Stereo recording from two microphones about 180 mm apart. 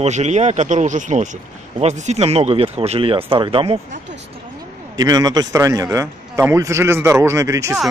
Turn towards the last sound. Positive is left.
turn(degrees=-15)  # may be behind; listen again after turning